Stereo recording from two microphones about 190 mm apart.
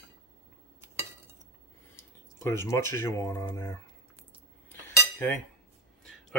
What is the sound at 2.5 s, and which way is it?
Speech, 15° left (ahead or behind).